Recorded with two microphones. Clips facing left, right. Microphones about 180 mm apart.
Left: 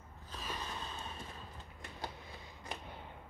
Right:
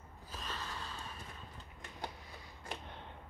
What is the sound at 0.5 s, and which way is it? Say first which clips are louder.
Snort: left 2 dB; 20° left (ahead or behind).